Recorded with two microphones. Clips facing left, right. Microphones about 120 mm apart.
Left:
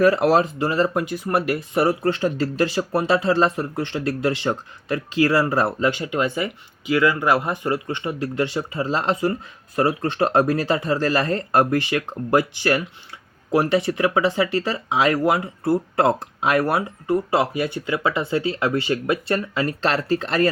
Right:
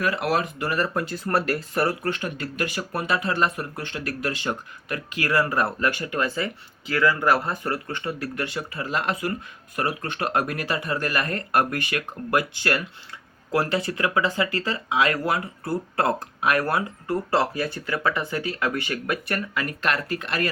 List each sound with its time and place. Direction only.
0.0 s speech: 35° left (ahead or behind)